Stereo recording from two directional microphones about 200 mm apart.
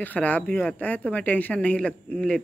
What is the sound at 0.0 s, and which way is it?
Speech, 10° left (ahead or behind).